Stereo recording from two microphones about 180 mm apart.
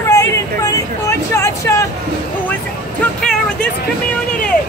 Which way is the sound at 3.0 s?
5° left (ahead or behind).